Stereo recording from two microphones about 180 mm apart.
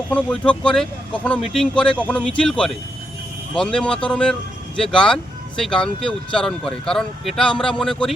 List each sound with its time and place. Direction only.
0.1 s speech: 5° left (ahead or behind)